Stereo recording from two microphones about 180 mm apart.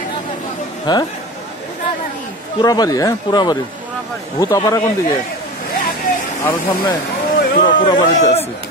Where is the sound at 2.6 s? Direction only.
20° left (ahead or behind).